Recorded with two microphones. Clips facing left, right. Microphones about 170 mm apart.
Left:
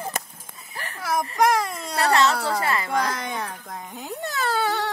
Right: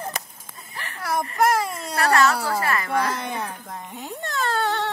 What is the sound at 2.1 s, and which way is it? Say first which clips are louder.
Speech: right 1 dB; 20° left (ahead or behind).